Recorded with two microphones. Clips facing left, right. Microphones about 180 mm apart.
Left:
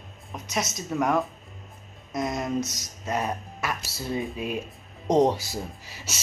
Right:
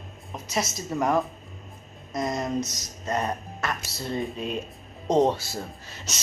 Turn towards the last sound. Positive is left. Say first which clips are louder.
# right 1 dB
turn(degrees=10)  # may be behind; listen again after turning